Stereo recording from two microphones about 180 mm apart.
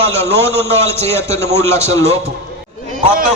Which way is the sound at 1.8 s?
35° right (ahead or behind).